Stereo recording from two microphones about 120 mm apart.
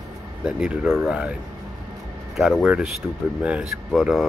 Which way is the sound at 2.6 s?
10° right (ahead or behind).